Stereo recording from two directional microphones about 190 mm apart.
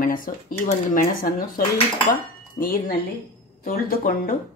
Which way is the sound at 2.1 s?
50° left (ahead or behind).